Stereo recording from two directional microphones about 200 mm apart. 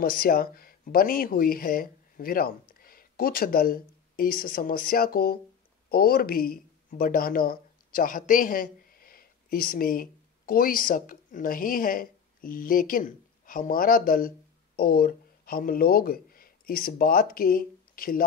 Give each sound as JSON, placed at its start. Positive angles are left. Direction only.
{"t": 0.0, "sound": "speech", "side_deg": 45}